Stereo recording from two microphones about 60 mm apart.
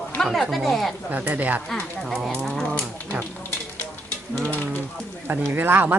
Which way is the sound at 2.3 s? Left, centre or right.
Centre.